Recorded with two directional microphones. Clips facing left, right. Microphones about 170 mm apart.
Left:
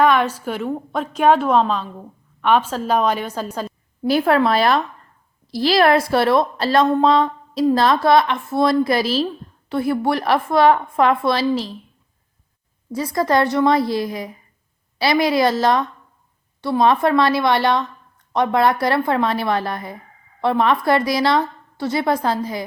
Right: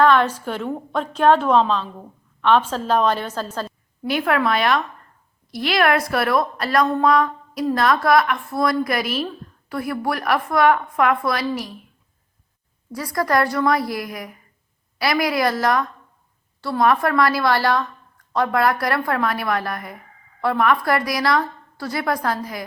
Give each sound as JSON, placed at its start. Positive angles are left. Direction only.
{"t": 0.0, "sound": "a woman's voice", "side_deg": 10}
{"t": 4.0, "sound": "a woman's voice", "side_deg": 35}
{"t": 12.9, "sound": "a woman's voice", "side_deg": 25}